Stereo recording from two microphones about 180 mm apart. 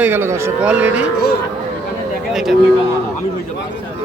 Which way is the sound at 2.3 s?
Centre (ahead or behind).